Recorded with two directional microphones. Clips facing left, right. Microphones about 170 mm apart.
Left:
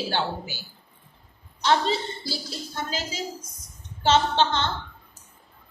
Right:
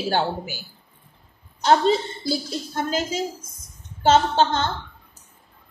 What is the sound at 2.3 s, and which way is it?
A woman's voice, 50° right (ahead or behind).